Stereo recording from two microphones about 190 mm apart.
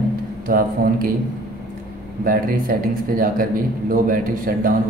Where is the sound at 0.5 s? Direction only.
50° right (ahead or behind).